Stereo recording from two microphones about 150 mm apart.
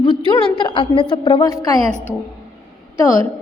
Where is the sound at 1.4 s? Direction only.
20° left (ahead or behind).